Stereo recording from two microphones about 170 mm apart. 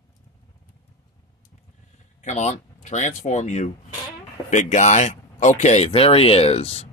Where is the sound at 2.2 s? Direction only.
40° left (ahead or behind).